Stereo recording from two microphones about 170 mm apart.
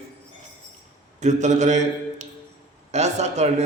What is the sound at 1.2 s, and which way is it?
A man's voice, 45° right (ahead or behind).